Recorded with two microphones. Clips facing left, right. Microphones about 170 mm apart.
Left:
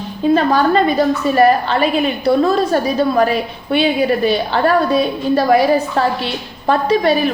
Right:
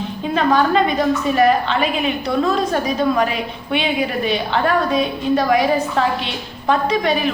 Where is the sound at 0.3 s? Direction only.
35° left (ahead or behind).